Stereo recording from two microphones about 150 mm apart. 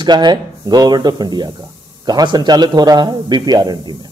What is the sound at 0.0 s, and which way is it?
Speech, 30° right (ahead or behind).